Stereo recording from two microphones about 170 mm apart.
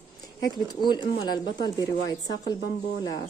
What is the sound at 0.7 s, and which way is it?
Speech, 25° left (ahead or behind).